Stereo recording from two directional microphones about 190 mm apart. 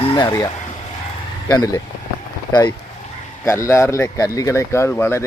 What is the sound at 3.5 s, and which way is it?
Speech, 15° left (ahead or behind).